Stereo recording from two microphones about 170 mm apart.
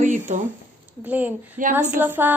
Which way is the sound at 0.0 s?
45° right (ahead or behind).